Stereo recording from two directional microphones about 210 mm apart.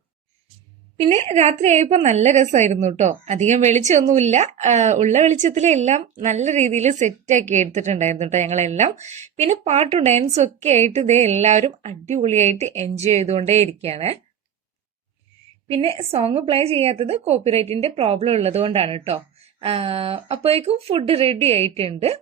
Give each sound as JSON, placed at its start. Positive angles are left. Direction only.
{"t": 0.9, "sound": "a woman's voice", "side_deg": -30}
{"t": 15.6, "sound": "a woman's voice", "side_deg": -25}